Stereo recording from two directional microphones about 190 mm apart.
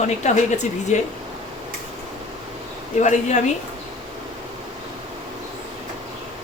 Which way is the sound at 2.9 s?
40° left (ahead or behind).